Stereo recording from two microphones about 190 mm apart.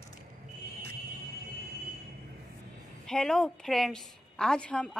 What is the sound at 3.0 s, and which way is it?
A woman's voice, 5° left (ahead or behind).